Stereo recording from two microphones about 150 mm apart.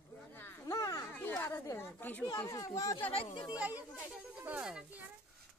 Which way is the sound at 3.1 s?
35° left (ahead or behind).